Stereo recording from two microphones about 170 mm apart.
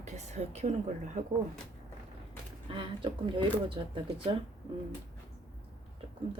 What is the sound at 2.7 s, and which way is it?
Speech, 30° right (ahead or behind).